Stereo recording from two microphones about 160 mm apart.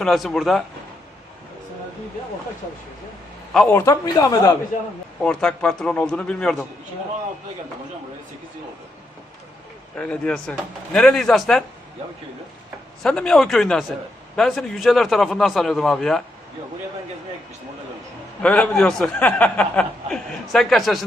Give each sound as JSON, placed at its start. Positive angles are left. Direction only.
{"t": 0.0, "sound": "a man's voice", "side_deg": 0}
{"t": 3.7, "sound": "speech", "side_deg": 15}
{"t": 5.2, "sound": "a man's voice", "side_deg": 5}
{"t": 10.0, "sound": "a man's voice", "side_deg": 5}
{"t": 13.0, "sound": "a man's voice", "side_deg": 5}
{"t": 18.4, "sound": "a man's voice", "side_deg": 5}